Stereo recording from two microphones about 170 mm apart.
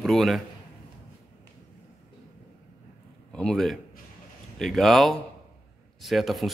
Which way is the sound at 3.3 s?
5° left (ahead or behind).